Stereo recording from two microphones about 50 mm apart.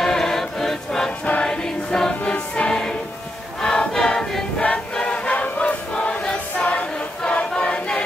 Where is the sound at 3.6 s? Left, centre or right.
Centre.